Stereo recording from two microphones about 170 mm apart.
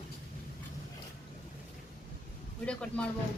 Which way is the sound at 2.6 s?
5° left (ahead or behind).